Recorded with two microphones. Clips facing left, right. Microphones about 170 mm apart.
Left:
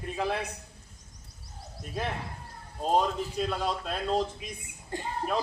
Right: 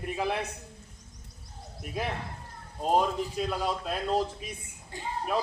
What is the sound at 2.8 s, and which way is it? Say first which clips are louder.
Speech: even; 5° right (ahead or behind).